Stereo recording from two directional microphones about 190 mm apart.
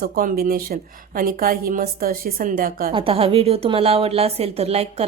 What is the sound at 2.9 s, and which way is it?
A woman's voice, 30° right (ahead or behind).